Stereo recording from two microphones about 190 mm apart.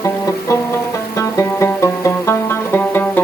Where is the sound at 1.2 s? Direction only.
15° left (ahead or behind).